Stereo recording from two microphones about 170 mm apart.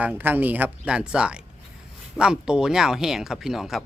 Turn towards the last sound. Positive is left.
turn(degrees=0)  # may be behind; listen again after turning